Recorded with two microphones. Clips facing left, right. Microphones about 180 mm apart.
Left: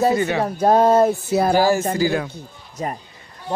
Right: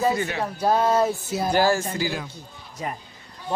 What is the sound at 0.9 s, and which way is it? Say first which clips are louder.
Speech: left 6 dB; 60° left (ahead or behind).